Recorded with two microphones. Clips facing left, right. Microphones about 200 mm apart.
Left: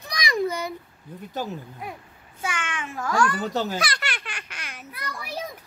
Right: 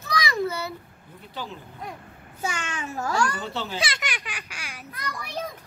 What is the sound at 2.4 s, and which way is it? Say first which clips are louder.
A child's voice: even; 40° right (ahead or behind).